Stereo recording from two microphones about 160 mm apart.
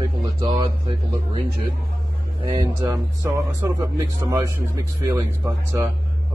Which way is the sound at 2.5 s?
25° right (ahead or behind).